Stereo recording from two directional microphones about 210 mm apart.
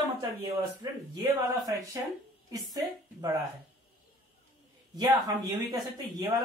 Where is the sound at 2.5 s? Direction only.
15° right (ahead or behind).